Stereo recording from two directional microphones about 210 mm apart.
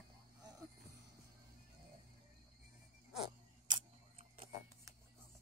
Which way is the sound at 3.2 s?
25° right (ahead or behind).